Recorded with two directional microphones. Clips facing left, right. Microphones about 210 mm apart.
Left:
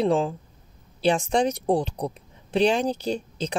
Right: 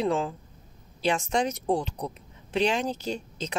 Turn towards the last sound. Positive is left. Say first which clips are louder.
# left 5 dB
turn(degrees=35)  # may be behind; listen again after turning